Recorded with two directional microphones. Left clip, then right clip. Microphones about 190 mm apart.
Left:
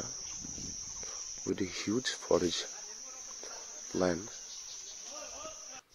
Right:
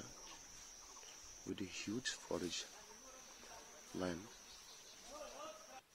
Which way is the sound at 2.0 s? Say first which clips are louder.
Left 16 dB; 20° left (ahead or behind).